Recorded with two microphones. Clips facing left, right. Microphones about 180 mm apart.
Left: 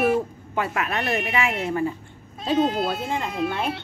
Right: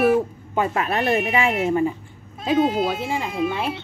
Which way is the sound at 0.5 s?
30° right (ahead or behind).